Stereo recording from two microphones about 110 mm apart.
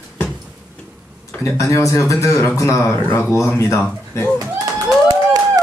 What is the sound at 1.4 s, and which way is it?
A man's voice, 30° left (ahead or behind).